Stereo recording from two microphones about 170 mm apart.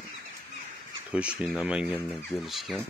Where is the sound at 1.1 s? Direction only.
5° right (ahead or behind).